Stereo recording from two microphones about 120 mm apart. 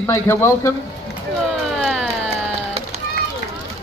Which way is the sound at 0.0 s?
20° left (ahead or behind).